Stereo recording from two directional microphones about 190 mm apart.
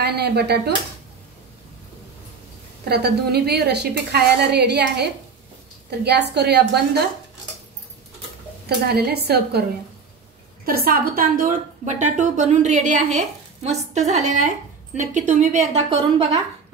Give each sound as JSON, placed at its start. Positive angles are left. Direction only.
{"t": 0.0, "sound": "speech", "side_deg": -60}
{"t": 2.8, "sound": "a woman's voice", "side_deg": -60}
{"t": 8.6, "sound": "a woman's voice", "side_deg": -55}
{"t": 16.2, "sound": "a woman's voice", "side_deg": -20}